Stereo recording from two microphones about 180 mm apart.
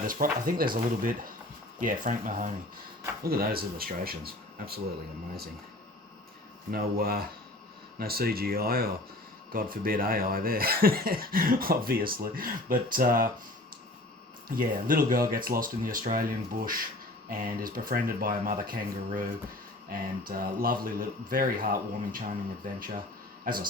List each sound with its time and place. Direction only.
0.1 s speech: 50° right (ahead or behind)
3.2 s speech: 55° right (ahead or behind)
6.7 s speech: 55° right (ahead or behind)
14.4 s speech: 50° right (ahead or behind)
23.5 s speech: 50° right (ahead or behind)